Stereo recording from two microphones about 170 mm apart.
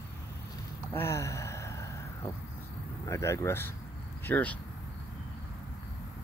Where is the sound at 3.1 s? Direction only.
15° left (ahead or behind).